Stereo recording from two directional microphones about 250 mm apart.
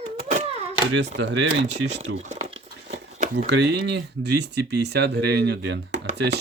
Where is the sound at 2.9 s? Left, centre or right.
Right.